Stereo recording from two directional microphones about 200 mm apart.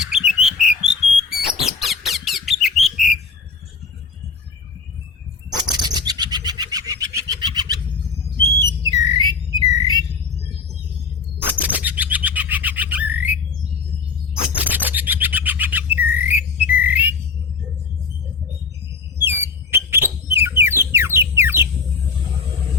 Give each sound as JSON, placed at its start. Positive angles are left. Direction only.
{"t": 0.3, "sound": "bird", "side_deg": -5}
{"t": 5.6, "sound": "bird", "side_deg": -20}
{"t": 8.4, "sound": "a sound", "side_deg": -20}
{"t": 11.4, "sound": "bird", "side_deg": -10}
{"t": 14.3, "sound": "bird", "side_deg": -10}
{"t": 19.2, "sound": "a sound", "side_deg": -10}